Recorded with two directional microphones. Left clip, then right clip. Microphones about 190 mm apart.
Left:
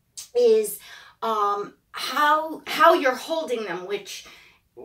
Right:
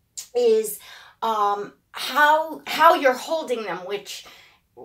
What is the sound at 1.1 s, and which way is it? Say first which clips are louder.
A woman's voice: right 2 dB; 5° right (ahead or behind).